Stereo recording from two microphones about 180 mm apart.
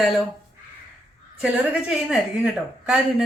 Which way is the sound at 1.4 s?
5° right (ahead or behind).